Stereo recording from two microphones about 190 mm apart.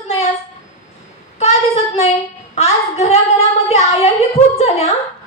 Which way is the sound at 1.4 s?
35° left (ahead or behind).